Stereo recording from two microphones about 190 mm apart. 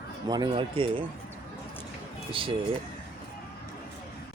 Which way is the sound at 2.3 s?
25° right (ahead or behind).